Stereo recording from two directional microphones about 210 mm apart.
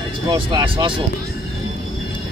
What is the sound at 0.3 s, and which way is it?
Speech, 20° right (ahead or behind).